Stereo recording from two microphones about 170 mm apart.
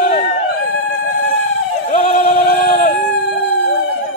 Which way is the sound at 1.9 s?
45° left (ahead or behind).